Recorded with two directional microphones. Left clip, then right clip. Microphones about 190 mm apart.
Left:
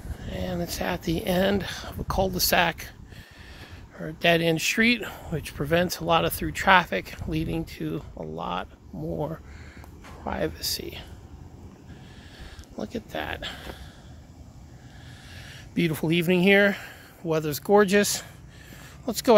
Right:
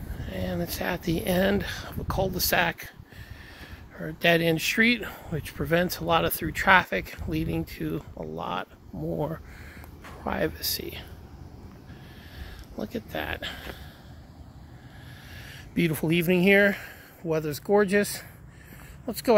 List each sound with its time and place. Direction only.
0.2 s speech: centre (ahead or behind)
9.1 s speech: 15° right (ahead or behind)
10.0 s a sound: 20° right (ahead or behind)
10.4 s speech: 5° right (ahead or behind)
12.7 s speech: 10° right (ahead or behind)
15.3 s speech: 10° right (ahead or behind); by 19.2 s 10° left (ahead or behind)